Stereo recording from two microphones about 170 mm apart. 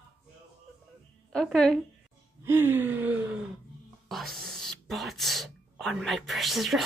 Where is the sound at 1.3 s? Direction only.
5° left (ahead or behind).